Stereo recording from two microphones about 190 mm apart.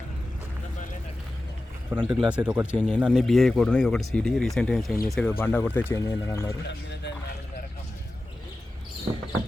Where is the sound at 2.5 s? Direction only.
10° right (ahead or behind).